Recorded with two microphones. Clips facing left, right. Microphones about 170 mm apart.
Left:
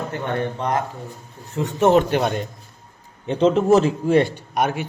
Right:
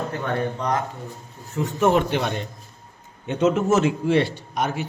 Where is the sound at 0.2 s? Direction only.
25° left (ahead or behind).